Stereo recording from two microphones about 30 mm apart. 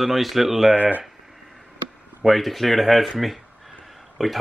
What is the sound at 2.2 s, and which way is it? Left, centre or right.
Speech, centre.